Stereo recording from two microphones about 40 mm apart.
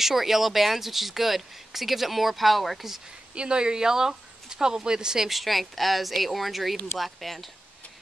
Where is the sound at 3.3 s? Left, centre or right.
Right.